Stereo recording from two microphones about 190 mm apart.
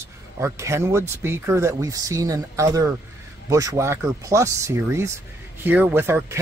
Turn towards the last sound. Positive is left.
turn(degrees=-10)  # may be behind; listen again after turning